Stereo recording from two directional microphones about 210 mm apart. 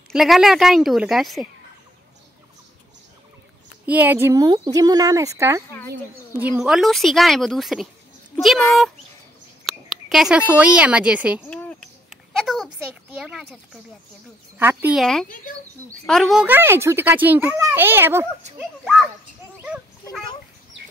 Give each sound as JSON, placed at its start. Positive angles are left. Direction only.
{"t": 0.1, "sound": "a woman's voice", "side_deg": 0}
{"t": 3.8, "sound": "a child's voice", "side_deg": -10}
{"t": 6.6, "sound": "a woman's voice", "side_deg": 0}
{"t": 9.7, "sound": "speech", "side_deg": 0}
{"t": 11.5, "sound": "a sound", "side_deg": 5}
{"t": 13.2, "sound": "a woman's voice", "side_deg": -5}
{"t": 14.6, "sound": "a child's voice", "side_deg": -10}
{"t": 19.6, "sound": "a sound", "side_deg": 0}